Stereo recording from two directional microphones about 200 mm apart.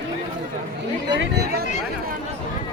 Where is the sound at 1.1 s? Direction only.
65° right (ahead or behind).